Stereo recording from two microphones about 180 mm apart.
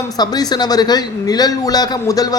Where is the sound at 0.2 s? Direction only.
20° left (ahead or behind).